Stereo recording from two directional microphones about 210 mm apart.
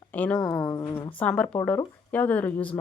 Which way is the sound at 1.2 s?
5° left (ahead or behind).